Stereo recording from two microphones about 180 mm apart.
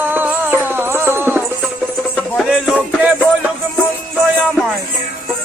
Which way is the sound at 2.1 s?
5° left (ahead or behind).